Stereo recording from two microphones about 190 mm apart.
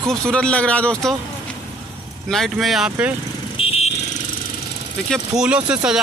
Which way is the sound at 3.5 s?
30° left (ahead or behind).